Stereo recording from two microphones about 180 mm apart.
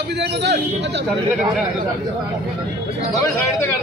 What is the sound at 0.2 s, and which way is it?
Speech, 70° right (ahead or behind).